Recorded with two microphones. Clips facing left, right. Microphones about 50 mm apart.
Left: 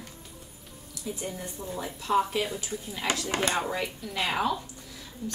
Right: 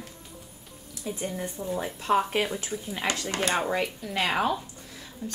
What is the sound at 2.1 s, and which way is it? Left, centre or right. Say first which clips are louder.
Speech: right 1 dB; right.